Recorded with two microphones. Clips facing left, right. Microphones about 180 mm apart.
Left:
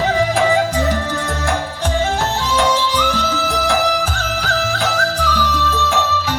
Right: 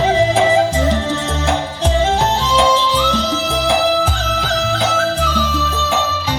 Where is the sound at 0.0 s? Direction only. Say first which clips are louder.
Right 3 dB; 25° right (ahead or behind).